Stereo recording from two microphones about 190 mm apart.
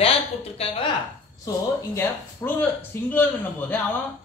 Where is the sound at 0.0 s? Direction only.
30° left (ahead or behind).